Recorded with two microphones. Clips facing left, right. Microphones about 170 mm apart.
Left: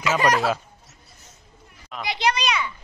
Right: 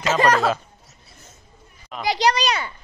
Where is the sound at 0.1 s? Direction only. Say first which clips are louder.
Right 2 dB; 10° left (ahead or behind).